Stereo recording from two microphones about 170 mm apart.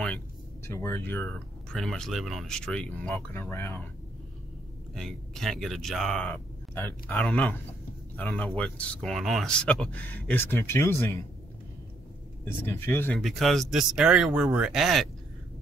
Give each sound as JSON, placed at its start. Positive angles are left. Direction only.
{"t": 0.7, "sound": "speech", "side_deg": 15}
{"t": 4.9, "sound": "speech", "side_deg": 0}
{"t": 12.4, "sound": "speech", "side_deg": 10}
{"t": 13.2, "sound": "speech", "side_deg": 0}